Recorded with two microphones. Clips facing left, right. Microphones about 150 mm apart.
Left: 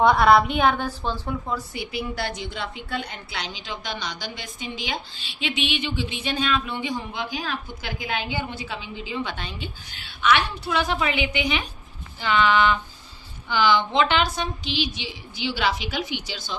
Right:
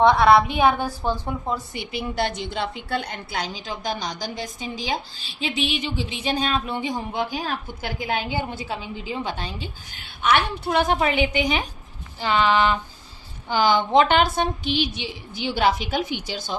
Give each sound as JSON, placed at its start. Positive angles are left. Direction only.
{"t": 0.0, "sound": "a woman's voice", "side_deg": 0}
{"t": 3.3, "sound": "a woman's voice", "side_deg": -45}
{"t": 10.2, "sound": "a woman's voice", "side_deg": -50}
{"t": 12.2, "sound": "a woman's voice", "side_deg": -35}